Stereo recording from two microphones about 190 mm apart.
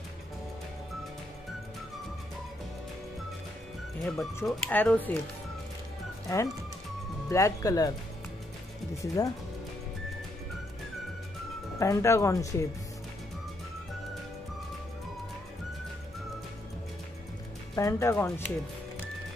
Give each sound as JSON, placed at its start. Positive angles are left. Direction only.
{"t": 4.5, "sound": "speech", "side_deg": 5}
{"t": 6.2, "sound": "speech", "side_deg": 15}
{"t": 8.9, "sound": "speech", "side_deg": 15}
{"t": 11.8, "sound": "speech", "side_deg": 15}
{"t": 17.7, "sound": "speech", "side_deg": 15}